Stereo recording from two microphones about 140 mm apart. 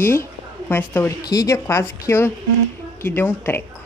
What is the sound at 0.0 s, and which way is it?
A woman's voice, 20° left (ahead or behind).